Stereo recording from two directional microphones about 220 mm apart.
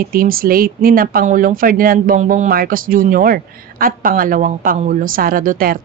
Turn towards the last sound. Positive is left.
turn(degrees=-40)  # may be behind; listen again after turning